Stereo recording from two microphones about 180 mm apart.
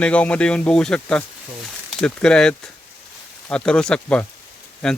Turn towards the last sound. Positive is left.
turn(degrees=5)  # may be behind; listen again after turning